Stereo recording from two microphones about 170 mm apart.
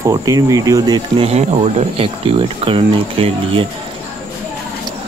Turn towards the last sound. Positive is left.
turn(degrees=-30)  # may be behind; listen again after turning